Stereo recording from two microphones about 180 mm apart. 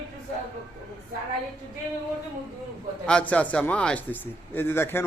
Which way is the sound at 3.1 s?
5° left (ahead or behind).